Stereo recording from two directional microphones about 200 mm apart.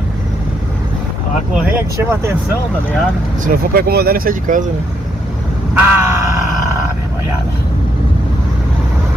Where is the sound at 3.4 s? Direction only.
50° right (ahead or behind).